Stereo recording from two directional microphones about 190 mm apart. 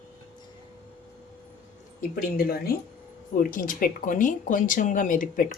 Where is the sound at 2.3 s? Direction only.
50° left (ahead or behind).